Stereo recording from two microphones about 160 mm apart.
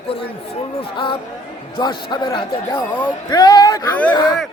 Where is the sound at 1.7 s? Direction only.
25° left (ahead or behind).